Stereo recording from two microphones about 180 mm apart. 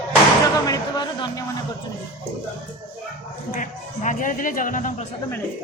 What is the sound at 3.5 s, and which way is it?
Speech, 45° left (ahead or behind).